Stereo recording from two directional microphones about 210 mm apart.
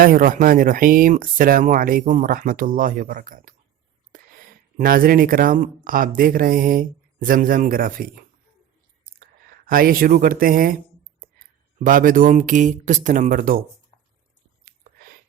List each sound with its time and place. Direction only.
0.0 s speech: 40° right (ahead or behind)
4.8 s speech: 45° right (ahead or behind)
11.8 s speech: 40° right (ahead or behind)
14.6 s a sound: 40° right (ahead or behind)